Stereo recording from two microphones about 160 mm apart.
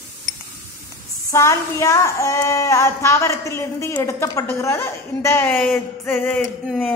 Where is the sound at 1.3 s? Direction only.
20° left (ahead or behind).